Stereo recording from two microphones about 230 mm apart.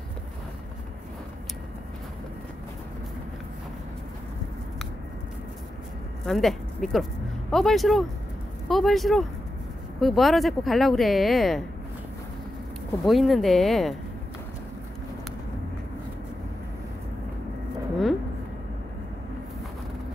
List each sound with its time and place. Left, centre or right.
6.2 s speech: centre
13.0 s speech: centre